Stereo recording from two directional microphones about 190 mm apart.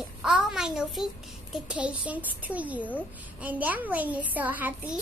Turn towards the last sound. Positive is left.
turn(degrees=-10)  # may be behind; listen again after turning